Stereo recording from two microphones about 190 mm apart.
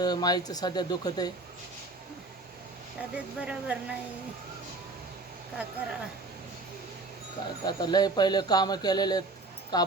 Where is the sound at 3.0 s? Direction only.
5° right (ahead or behind).